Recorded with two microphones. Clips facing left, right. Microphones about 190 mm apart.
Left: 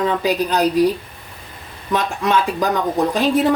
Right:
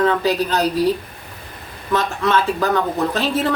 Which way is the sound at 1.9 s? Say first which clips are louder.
Even; 15° left (ahead or behind).